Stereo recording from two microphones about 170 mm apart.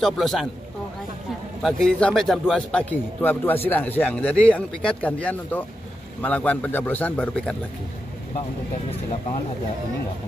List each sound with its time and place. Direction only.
0.0 s speech: centre (ahead or behind)
1.6 s a man's voice: centre (ahead or behind)